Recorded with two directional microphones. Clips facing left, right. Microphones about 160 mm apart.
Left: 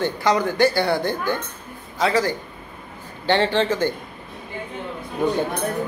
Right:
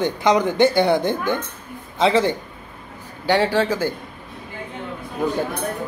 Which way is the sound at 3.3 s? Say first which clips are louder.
Right 1 dB; 10° right (ahead or behind).